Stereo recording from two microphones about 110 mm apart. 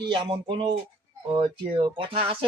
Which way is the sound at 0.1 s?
50° right (ahead or behind).